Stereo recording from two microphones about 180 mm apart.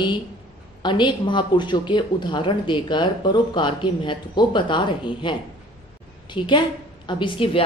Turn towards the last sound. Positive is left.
turn(degrees=30)  # may be behind; listen again after turning